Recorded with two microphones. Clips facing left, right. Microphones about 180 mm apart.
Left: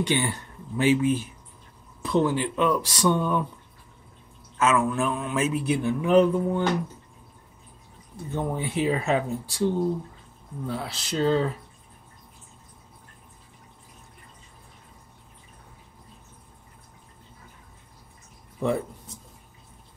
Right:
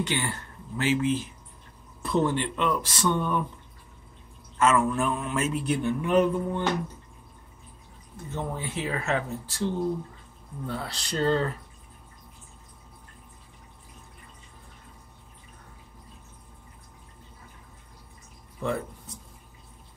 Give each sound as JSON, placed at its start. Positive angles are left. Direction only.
{"t": 0.0, "sound": "speech", "side_deg": 15}
{"t": 2.0, "sound": "speech", "side_deg": 0}
{"t": 4.6, "sound": "a man's voice", "side_deg": 0}
{"t": 8.3, "sound": "speech", "side_deg": 15}
{"t": 10.7, "sound": "a man's voice", "side_deg": 5}
{"t": 18.6, "sound": "speech", "side_deg": 15}